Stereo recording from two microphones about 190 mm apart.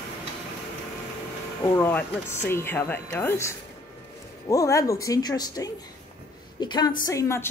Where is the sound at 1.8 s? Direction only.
10° left (ahead or behind).